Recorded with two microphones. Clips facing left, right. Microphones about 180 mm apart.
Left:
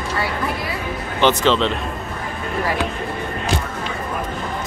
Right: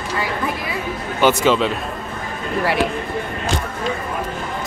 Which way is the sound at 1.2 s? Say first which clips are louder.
Right 1 dB; 10° right (ahead or behind).